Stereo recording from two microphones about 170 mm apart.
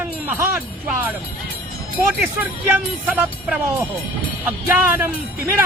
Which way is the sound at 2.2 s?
10° right (ahead or behind).